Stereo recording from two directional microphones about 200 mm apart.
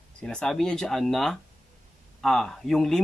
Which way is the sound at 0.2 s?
5° left (ahead or behind).